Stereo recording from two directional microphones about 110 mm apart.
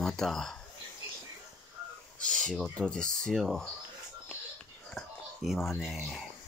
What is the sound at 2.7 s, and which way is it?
Speech, 5° left (ahead or behind).